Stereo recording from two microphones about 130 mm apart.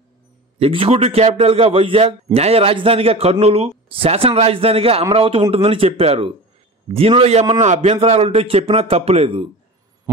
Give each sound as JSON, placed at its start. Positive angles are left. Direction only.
{"t": 0.6, "sound": "a man's voice", "side_deg": -45}
{"t": 10.1, "sound": "heart murmur", "side_deg": -25}